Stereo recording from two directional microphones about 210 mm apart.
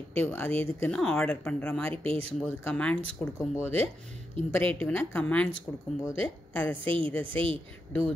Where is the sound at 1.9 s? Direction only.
25° right (ahead or behind).